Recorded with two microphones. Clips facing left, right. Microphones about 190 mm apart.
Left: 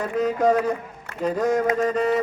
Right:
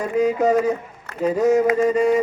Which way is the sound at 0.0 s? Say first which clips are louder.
Right 2 dB; 10° right (ahead or behind).